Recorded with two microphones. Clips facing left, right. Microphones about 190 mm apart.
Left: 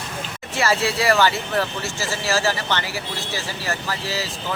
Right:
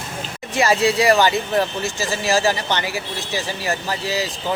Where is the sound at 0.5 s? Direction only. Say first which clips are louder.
Right 4 dB; 15° right (ahead or behind).